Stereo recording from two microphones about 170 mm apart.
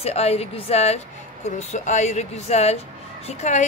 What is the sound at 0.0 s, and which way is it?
A woman's voice, 40° left (ahead or behind).